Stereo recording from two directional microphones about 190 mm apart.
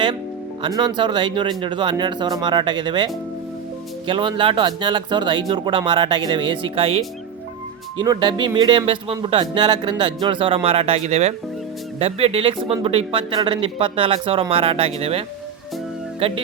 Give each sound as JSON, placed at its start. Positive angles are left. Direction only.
{"t": 0.6, "sound": "speech", "side_deg": -25}